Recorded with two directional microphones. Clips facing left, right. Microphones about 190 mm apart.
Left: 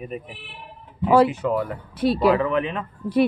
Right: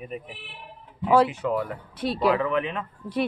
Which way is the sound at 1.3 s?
40° left (ahead or behind).